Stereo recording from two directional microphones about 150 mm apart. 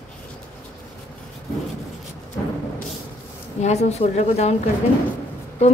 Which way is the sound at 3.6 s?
45° left (ahead or behind).